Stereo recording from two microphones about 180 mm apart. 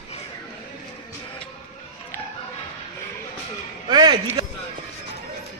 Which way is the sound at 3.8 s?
25° right (ahead or behind).